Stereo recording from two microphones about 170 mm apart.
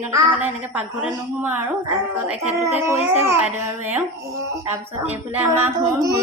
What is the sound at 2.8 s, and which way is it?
Speech, 15° right (ahead or behind).